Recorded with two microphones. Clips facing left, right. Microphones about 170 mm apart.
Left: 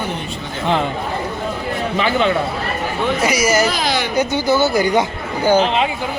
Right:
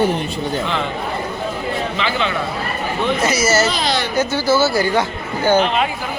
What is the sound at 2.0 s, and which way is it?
Speech, 45° left (ahead or behind).